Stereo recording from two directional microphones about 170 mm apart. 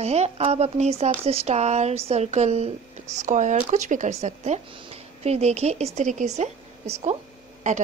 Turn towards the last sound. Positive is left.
turn(degrees=-45)  # may be behind; listen again after turning